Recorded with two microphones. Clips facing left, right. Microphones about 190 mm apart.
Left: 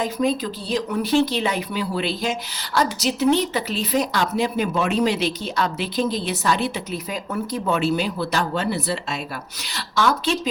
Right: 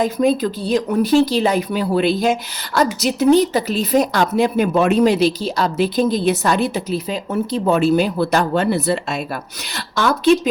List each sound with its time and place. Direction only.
0.0 s speech: 50° right (ahead or behind)
6.9 s speech: 25° right (ahead or behind)
7.6 s speech: 40° right (ahead or behind)